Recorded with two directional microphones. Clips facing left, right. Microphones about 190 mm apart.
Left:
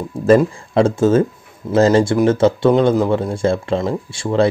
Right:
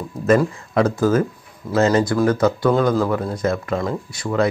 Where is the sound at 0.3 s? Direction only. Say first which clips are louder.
Left 4 dB; 25° left (ahead or behind).